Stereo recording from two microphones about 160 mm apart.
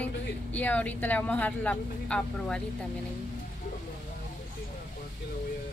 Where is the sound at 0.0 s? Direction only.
10° left (ahead or behind).